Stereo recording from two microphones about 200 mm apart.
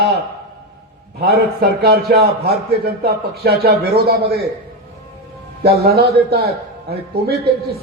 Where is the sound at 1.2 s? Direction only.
50° right (ahead or behind).